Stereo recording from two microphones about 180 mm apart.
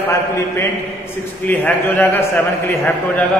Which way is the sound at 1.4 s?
10° left (ahead or behind).